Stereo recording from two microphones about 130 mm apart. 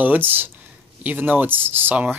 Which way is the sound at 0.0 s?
15° right (ahead or behind).